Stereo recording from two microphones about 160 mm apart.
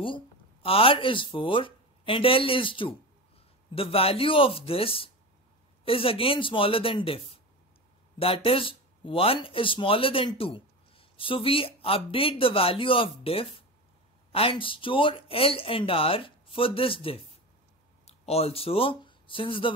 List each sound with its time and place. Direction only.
0.0 s speech: 35° left (ahead or behind)